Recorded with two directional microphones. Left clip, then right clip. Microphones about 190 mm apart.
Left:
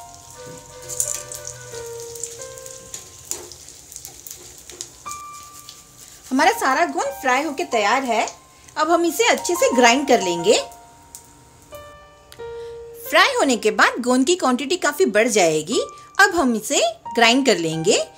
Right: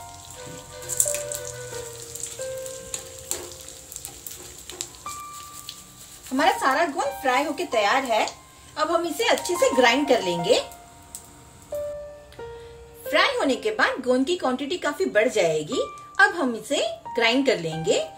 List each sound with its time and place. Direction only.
6.3 s speech: 65° left (ahead or behind)
13.1 s speech: 65° left (ahead or behind)